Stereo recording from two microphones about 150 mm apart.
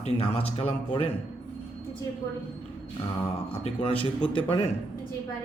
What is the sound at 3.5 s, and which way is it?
Speech, 40° left (ahead or behind).